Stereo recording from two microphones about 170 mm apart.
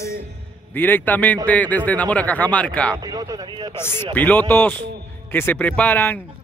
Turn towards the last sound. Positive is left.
turn(degrees=10)  # may be behind; listen again after turning